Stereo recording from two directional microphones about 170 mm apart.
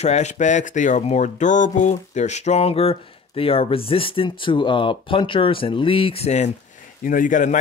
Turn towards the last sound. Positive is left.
turn(degrees=50)  # may be behind; listen again after turning